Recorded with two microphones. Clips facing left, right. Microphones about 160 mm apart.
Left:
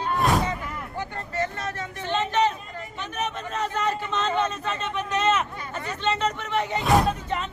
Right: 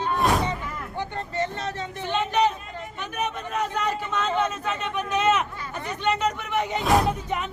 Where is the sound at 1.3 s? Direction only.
25° right (ahead or behind).